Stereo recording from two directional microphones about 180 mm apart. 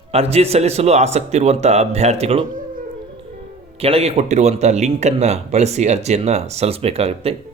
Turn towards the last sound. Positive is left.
turn(degrees=-35)  # may be behind; listen again after turning